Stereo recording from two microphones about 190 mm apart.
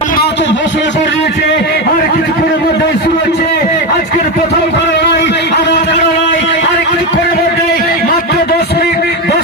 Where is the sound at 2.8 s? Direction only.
65° left (ahead or behind).